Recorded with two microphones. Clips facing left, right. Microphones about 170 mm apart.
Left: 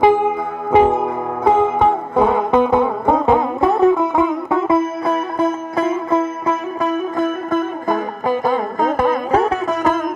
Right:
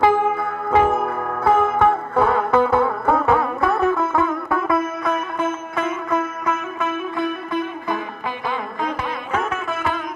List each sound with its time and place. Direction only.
0.0 s music: 15° left (ahead or behind); by 10.0 s 40° left (ahead or behind)